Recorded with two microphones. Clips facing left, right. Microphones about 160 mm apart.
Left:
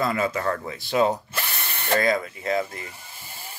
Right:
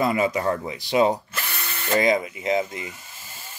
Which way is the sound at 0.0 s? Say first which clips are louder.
Right 2 dB; 15° right (ahead or behind).